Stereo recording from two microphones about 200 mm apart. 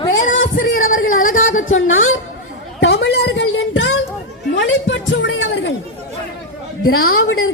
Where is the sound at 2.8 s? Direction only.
65° left (ahead or behind).